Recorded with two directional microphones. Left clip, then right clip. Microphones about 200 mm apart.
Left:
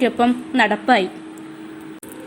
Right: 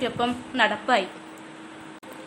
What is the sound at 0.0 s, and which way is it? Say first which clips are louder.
A woman's voice: left 8 dB; 20° left (ahead or behind).